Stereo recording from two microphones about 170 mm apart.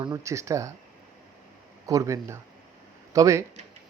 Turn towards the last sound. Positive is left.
turn(degrees=-20)  # may be behind; listen again after turning